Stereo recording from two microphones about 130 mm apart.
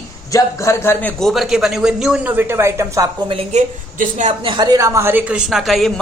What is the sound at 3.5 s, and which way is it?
Speech, 60° right (ahead or behind).